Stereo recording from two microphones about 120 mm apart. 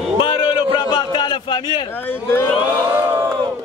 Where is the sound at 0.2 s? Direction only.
50° left (ahead or behind).